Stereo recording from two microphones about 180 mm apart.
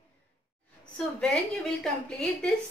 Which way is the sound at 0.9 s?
5° left (ahead or behind).